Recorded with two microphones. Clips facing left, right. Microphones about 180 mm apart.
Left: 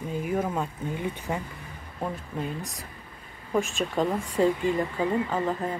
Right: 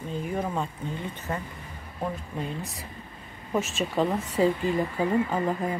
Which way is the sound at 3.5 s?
Centre (ahead or behind).